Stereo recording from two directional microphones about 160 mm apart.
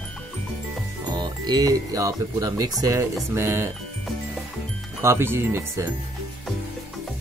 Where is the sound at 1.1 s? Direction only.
25° right (ahead or behind).